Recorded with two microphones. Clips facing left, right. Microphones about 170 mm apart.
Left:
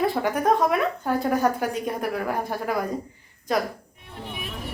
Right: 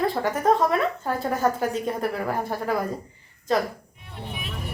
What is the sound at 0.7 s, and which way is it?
A woman's voice, centre (ahead or behind).